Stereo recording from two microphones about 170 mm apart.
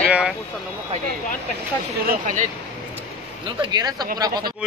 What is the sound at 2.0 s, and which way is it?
Speech, 50° right (ahead or behind).